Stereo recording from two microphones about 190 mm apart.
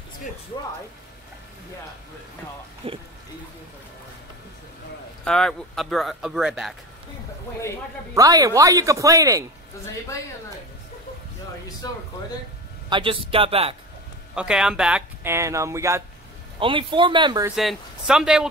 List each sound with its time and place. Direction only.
2.8 s speech: 30° right (ahead or behind)
5.2 s speech: 5° left (ahead or behind)
8.1 s speech: 20° right (ahead or behind)
11.8 s speech: 20° left (ahead or behind)
12.9 s speech: 25° right (ahead or behind)
14.3 s speech: 5° right (ahead or behind)
16.5 s speech: 25° right (ahead or behind)
17.6 s speech: centre (ahead or behind)